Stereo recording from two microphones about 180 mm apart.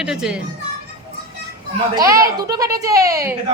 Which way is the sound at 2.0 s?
15° right (ahead or behind).